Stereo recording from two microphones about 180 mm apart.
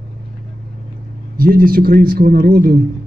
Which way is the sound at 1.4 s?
55° right (ahead or behind).